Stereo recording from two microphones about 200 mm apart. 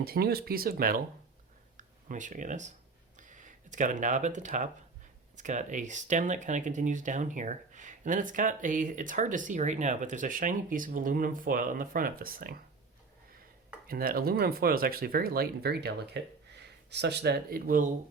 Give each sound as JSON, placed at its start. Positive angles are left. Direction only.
{"t": 0.0, "sound": "speech", "side_deg": -50}
{"t": 13.8, "sound": "speech", "side_deg": -45}